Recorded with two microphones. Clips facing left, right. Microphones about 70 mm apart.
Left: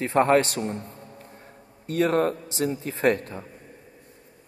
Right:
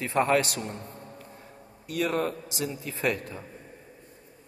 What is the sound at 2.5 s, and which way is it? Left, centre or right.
Speech, left.